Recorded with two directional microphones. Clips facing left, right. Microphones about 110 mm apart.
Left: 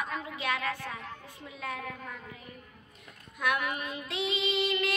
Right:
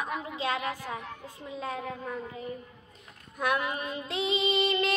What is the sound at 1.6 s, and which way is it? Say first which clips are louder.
Speech: right 3 dB; 30° right (ahead or behind).